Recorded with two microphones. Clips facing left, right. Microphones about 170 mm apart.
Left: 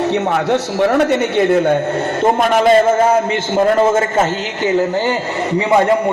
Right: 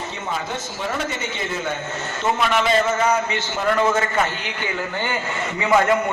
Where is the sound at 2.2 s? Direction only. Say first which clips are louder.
Left 7 dB; 45° left (ahead or behind).